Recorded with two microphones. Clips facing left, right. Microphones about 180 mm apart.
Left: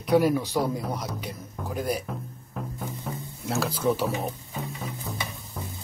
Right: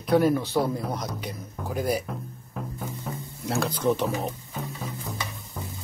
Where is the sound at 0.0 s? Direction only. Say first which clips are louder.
Even; 10° left (ahead or behind).